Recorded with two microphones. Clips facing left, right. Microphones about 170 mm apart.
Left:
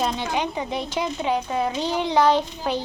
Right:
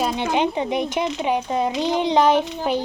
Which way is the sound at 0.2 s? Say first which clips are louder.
Right 5 dB; 20° right (ahead or behind).